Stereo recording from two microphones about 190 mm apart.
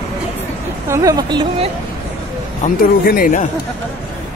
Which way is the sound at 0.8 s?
15° right (ahead or behind).